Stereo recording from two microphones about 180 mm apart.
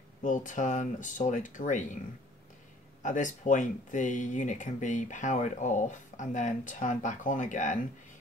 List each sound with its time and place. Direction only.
0.2 s speech: 45° left (ahead or behind)
3.0 s speech: 45° left (ahead or behind)